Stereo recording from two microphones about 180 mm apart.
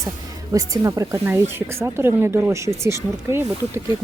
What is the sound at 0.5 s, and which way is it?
A woman's voice, 20° right (ahead or behind).